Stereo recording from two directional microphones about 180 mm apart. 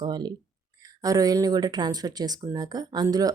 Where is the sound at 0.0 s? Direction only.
25° right (ahead or behind).